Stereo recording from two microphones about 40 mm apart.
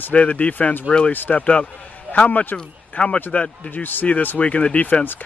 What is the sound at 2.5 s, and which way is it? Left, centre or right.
Speech, left.